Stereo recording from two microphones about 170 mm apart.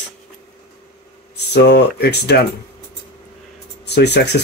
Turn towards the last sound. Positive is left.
turn(degrees=80)